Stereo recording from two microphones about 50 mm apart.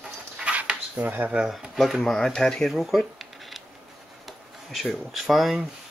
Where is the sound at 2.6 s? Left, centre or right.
Centre.